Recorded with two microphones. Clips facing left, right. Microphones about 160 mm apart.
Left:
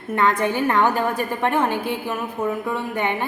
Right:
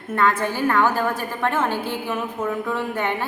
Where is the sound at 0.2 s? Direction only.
15° left (ahead or behind).